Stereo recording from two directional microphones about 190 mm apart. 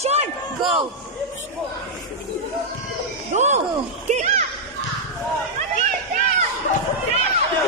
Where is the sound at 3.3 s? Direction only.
35° right (ahead or behind).